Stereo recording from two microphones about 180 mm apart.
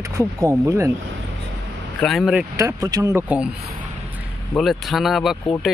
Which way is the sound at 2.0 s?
Centre (ahead or behind).